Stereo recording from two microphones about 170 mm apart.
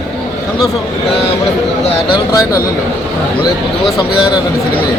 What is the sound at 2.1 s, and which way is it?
Speech, 20° left (ahead or behind).